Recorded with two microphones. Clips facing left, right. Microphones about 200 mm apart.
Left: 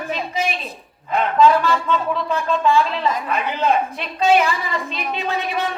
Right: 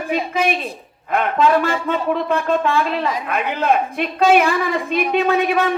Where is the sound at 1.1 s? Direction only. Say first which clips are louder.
Left 1 dB; 55° right (ahead or behind).